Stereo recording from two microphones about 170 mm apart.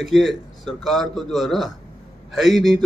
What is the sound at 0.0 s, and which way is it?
A man's voice, centre (ahead or behind).